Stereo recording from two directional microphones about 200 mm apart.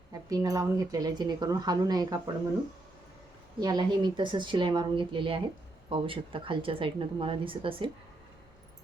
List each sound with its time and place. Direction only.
0.1 s speech: 20° right (ahead or behind)
3.6 s speech: 20° right (ahead or behind)